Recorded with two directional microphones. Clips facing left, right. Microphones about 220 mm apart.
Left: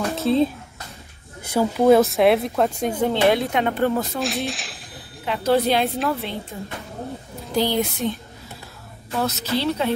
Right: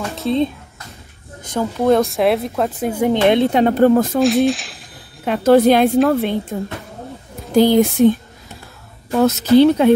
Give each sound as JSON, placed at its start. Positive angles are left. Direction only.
{"t": 0.1, "sound": "speech", "side_deg": 0}
{"t": 3.3, "sound": "speech", "side_deg": -30}
{"t": 4.2, "sound": "speech", "side_deg": 0}
{"t": 5.2, "sound": "speech", "side_deg": -50}
{"t": 7.5, "sound": "speech", "side_deg": -50}
{"t": 9.2, "sound": "speech", "side_deg": -50}